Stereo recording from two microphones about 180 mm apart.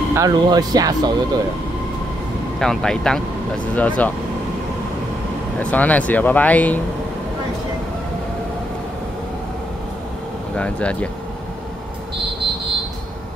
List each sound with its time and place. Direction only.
0.1 s speech: 20° right (ahead or behind)
2.6 s speech: 5° left (ahead or behind)
5.6 s speech: 10° left (ahead or behind)
10.5 s speech: 5° left (ahead or behind)